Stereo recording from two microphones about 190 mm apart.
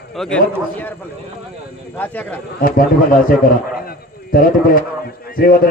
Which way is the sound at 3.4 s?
50° left (ahead or behind).